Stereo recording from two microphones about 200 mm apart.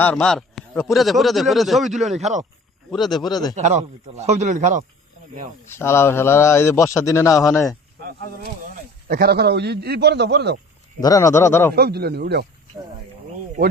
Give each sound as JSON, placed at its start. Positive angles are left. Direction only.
{"t": 0.0, "sound": "speech", "side_deg": 5}
{"t": 2.1, "sound": "speech", "side_deg": -35}
{"t": 2.9, "sound": "speech", "side_deg": 0}
{"t": 3.2, "sound": "speech", "side_deg": 20}
{"t": 3.5, "sound": "speech", "side_deg": -35}
{"t": 5.7, "sound": "a man's voice", "side_deg": 15}
{"t": 9.0, "sound": "a man's voice", "side_deg": -50}
{"t": 11.0, "sound": "a man's voice", "side_deg": 15}
{"t": 11.7, "sound": "speech", "side_deg": -50}